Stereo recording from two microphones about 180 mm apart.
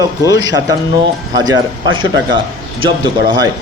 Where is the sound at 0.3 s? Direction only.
20° right (ahead or behind).